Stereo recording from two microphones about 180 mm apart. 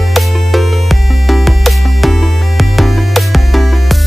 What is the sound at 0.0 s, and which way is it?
Music, centre (ahead or behind).